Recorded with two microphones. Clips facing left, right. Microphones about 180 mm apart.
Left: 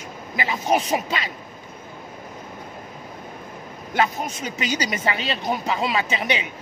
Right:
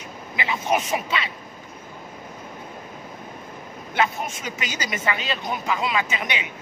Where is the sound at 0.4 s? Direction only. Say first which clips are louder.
Left 2 dB; 35° left (ahead or behind).